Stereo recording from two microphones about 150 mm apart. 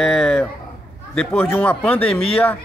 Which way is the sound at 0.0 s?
5° left (ahead or behind).